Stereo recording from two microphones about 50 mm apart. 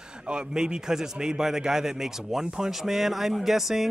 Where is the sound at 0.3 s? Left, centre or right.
Centre.